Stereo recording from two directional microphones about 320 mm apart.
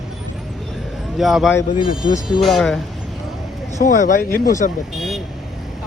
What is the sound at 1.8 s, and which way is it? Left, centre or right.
Speech, centre.